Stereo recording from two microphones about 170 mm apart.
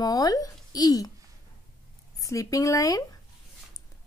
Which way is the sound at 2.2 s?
20° left (ahead or behind).